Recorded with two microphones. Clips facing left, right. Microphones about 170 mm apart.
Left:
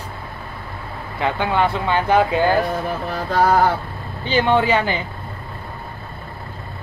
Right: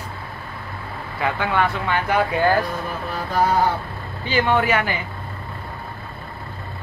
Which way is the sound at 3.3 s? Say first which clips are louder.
Left 3 dB; 70° left (ahead or behind).